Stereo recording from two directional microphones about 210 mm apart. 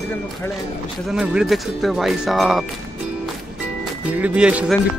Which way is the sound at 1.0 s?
5° right (ahead or behind).